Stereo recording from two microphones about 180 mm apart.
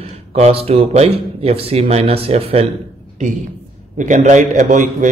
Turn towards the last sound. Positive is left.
turn(degrees=-45)  # may be behind; listen again after turning